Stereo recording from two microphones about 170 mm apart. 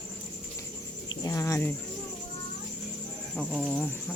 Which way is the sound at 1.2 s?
15° left (ahead or behind).